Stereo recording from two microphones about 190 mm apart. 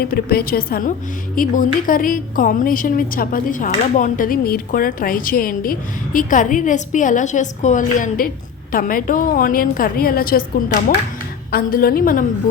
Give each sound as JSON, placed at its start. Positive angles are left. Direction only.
{"t": 0.0, "sound": "a woman's voice", "side_deg": 55}